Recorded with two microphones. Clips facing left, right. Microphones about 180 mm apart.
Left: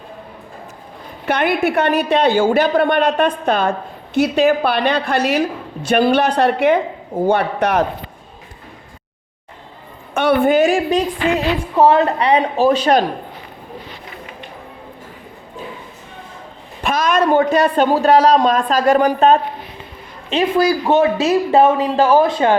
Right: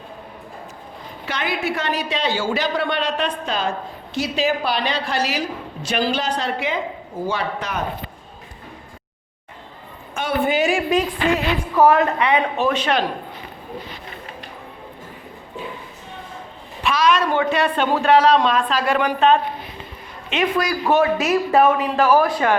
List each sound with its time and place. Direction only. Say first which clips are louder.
1.2 s a woman's voice: left 8 dB; 55° left (ahead or behind)
10.2 s a woman's voice: left 7 dB; 60° left (ahead or behind); by 13.1 s 40° left (ahead or behind)
16.8 s speech: left 2 dB; 45° left (ahead or behind)
20.3 s speech: left 6 dB; 30° left (ahead or behind)